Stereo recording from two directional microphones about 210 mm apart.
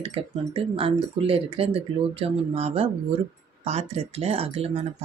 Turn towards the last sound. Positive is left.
turn(degrees=-30)  # may be behind; listen again after turning